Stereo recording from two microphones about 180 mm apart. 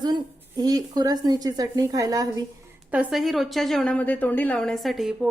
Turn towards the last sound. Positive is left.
turn(degrees=0)  # may be behind; listen again after turning